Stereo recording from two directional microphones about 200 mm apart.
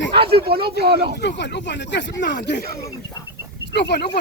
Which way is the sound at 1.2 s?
60° left (ahead or behind).